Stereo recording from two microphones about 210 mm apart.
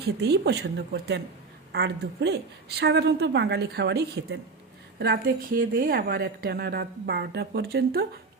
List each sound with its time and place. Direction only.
0.0 s a woman's voice: 50° right (ahead or behind)